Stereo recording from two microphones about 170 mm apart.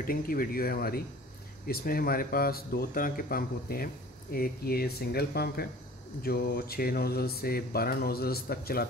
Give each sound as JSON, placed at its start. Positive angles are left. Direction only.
{"t": 0.0, "sound": "speech", "side_deg": 60}